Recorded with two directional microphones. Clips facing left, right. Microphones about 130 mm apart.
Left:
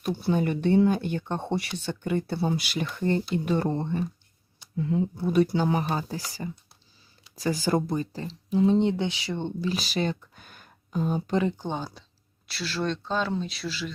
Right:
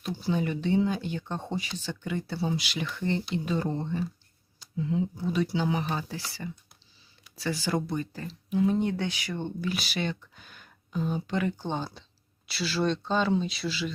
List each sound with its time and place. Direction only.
0.0 s speech: 55° left (ahead or behind)
1.8 s speech: 55° left (ahead or behind)
7.9 s speech: 30° left (ahead or behind)
11.4 s speech: 15° left (ahead or behind)
12.5 s speech: centre (ahead or behind)